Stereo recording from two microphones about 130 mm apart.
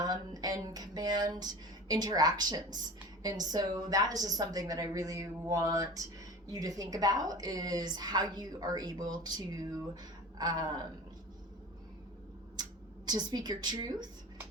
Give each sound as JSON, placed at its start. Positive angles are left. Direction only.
{"t": 0.0, "sound": "a woman's voice", "side_deg": -30}
{"t": 12.6, "sound": "a sound", "side_deg": -30}
{"t": 13.1, "sound": "a woman's voice", "side_deg": -35}